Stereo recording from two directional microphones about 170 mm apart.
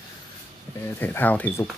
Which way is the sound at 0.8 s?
10° left (ahead or behind).